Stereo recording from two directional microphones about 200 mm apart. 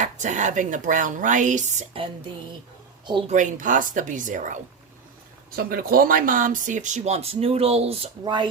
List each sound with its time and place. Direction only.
0.0 s speech: 35° right (ahead or behind)
3.2 s speech: 40° right (ahead or behind); by 8.4 s 20° right (ahead or behind)